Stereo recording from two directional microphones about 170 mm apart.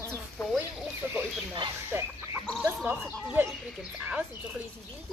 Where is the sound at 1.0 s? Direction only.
10° right (ahead or behind).